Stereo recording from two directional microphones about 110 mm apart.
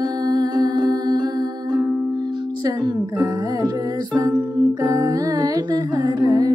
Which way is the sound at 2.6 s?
35° right (ahead or behind).